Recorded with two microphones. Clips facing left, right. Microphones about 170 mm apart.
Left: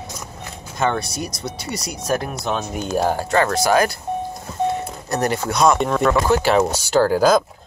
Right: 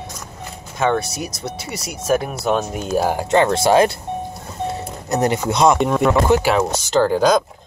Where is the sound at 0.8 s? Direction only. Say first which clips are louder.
Right 2 dB; 5° right (ahead or behind).